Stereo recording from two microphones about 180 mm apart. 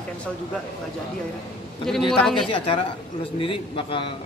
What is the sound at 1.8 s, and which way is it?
Speech, centre (ahead or behind).